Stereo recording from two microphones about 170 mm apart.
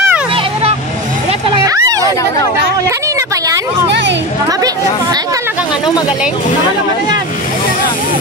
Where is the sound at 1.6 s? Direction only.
20° right (ahead or behind).